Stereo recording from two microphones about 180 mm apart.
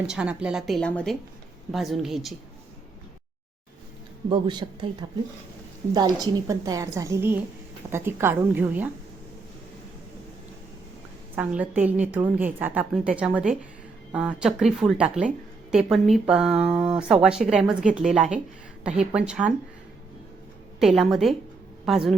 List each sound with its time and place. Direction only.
0.1 s speech: 5° right (ahead or behind)
4.3 s a woman's voice: 25° right (ahead or behind); by 8.9 s 10° right (ahead or behind)
11.3 s a woman's voice: 10° right (ahead or behind)
20.7 s speech: centre (ahead or behind)